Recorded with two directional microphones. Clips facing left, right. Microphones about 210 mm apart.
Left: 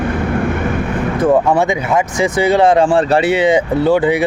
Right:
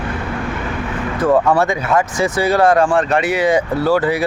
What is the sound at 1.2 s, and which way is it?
Speech, 15° left (ahead or behind).